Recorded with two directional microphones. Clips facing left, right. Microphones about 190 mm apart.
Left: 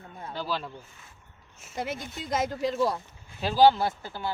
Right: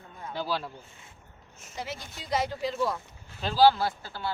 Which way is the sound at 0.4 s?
5° right (ahead or behind).